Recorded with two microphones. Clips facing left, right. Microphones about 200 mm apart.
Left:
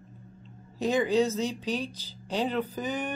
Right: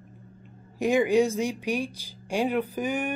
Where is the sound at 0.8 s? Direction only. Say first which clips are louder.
Right 3 dB; 10° right (ahead or behind).